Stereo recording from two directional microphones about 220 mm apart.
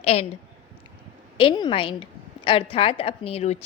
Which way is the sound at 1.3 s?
20° left (ahead or behind).